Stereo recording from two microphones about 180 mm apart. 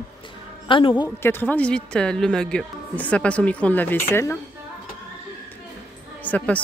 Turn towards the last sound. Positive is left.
turn(degrees=10)  # may be behind; listen again after turning